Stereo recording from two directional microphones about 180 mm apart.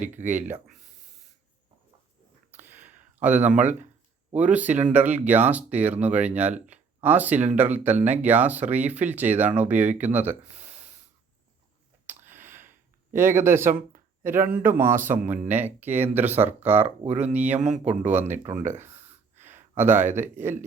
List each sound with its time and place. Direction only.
0.3 s speech: 10° right (ahead or behind)
2.5 s a sound: 10° right (ahead or behind)
4.4 s speech: 10° right (ahead or behind)
12.0 s a sound: 10° right (ahead or behind)
13.1 s speech: 15° right (ahead or behind)
17.6 s speech: 40° right (ahead or behind)
18.0 s speech: 10° right (ahead or behind)